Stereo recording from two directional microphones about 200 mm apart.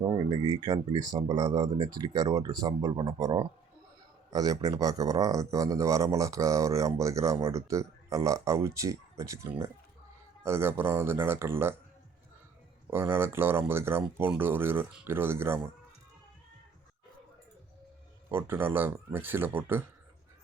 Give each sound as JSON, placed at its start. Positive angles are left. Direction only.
{"t": 0.3, "sound": "speech", "side_deg": -20}
{"t": 12.9, "sound": "speech", "side_deg": -10}
{"t": 18.3, "sound": "speech", "side_deg": -10}